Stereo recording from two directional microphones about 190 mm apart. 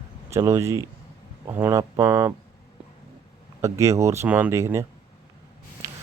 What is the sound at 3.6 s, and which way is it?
Speech, 15° right (ahead or behind).